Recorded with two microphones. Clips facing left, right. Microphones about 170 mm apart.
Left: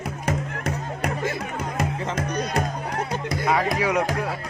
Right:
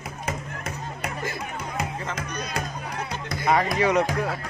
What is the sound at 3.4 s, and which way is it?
Music, 5° left (ahead or behind).